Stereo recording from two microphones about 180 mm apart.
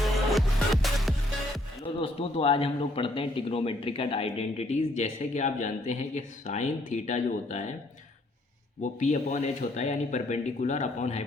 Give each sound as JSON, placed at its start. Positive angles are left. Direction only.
{"t": 0.0, "sound": "music", "side_deg": 0}
{"t": 1.8, "sound": "a man's voice", "side_deg": 30}
{"t": 8.8, "sound": "a man's voice", "side_deg": 45}